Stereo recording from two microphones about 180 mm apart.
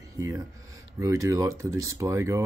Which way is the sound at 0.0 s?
20° right (ahead or behind).